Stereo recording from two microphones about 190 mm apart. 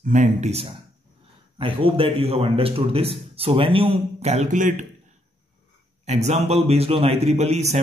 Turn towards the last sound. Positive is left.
turn(degrees=-35)  # may be behind; listen again after turning